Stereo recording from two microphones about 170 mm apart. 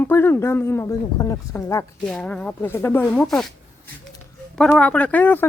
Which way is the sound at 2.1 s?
5° left (ahead or behind).